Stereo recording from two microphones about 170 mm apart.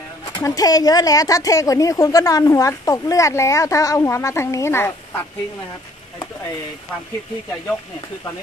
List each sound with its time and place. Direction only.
0.4 s speech: 20° left (ahead or behind)